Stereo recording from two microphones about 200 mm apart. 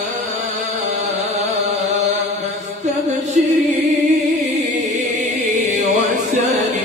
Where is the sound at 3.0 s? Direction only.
40° right (ahead or behind).